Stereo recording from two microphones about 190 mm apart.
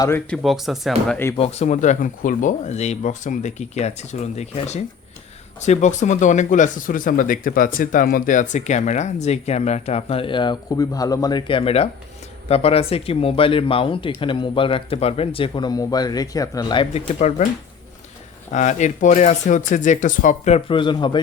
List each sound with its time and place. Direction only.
0.3 s speech: centre (ahead or behind)
1.4 s speech: 35° left (ahead or behind)
18.5 s speech: 40° left (ahead or behind)